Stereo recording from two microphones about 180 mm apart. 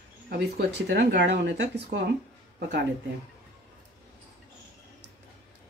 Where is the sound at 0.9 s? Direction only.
65° right (ahead or behind).